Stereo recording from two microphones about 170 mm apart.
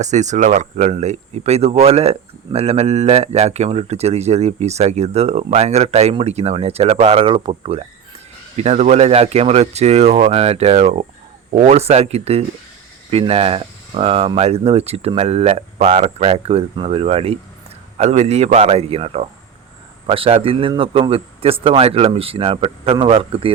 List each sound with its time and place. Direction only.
0.0 s speech: 45° right (ahead or behind)